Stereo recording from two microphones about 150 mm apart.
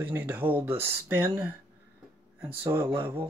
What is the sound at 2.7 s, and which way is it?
Speech, 20° right (ahead or behind).